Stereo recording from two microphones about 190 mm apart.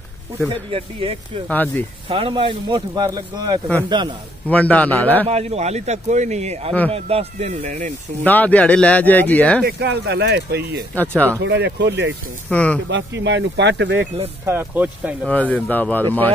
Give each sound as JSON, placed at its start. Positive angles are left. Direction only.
{"t": 0.5, "sound": "speech", "side_deg": -30}
{"t": 1.5, "sound": "speech", "side_deg": 10}
{"t": 2.0, "sound": "speech", "side_deg": -30}
{"t": 4.5, "sound": "speech", "side_deg": 5}
{"t": 5.3, "sound": "a man's voice", "side_deg": -35}
{"t": 8.2, "sound": "speech", "side_deg": 10}
{"t": 9.7, "sound": "speech", "side_deg": -60}
{"t": 11.0, "sound": "speech", "side_deg": 10}
{"t": 11.4, "sound": "speech", "side_deg": -65}
{"t": 12.4, "sound": "speech", "side_deg": 5}
{"t": 12.9, "sound": "speech", "side_deg": -70}
{"t": 14.4, "sound": "speech", "side_deg": -10}
{"t": 15.5, "sound": "speech", "side_deg": 10}